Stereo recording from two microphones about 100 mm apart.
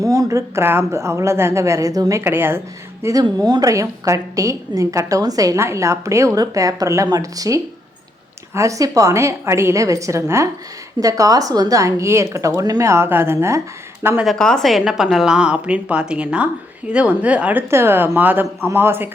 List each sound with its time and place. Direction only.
0.0 s speech: 35° right (ahead or behind)
2.2 s speech: 20° right (ahead or behind)
3.0 s a woman's voice: 35° right (ahead or behind)
14.3 s a woman's voice: 5° left (ahead or behind); by 19.1 s 20° right (ahead or behind)